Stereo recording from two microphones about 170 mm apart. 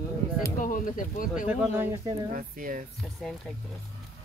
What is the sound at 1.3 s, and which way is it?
Speech, 5° right (ahead or behind).